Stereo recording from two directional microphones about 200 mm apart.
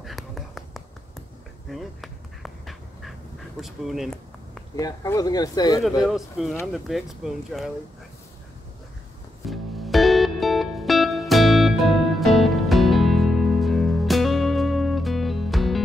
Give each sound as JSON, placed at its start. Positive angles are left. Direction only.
{"t": 0.0, "sound": "whispering", "side_deg": 0}
{"t": 1.7, "sound": "dog", "side_deg": 0}
{"t": 3.6, "sound": "speech", "side_deg": 0}
{"t": 4.7, "sound": "speech", "side_deg": 15}
{"t": 6.0, "sound": "speech", "side_deg": 0}
{"t": 9.5, "sound": "music", "side_deg": 0}